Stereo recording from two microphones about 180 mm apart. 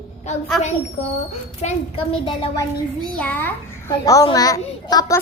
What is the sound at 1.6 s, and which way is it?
Speech, 30° left (ahead or behind).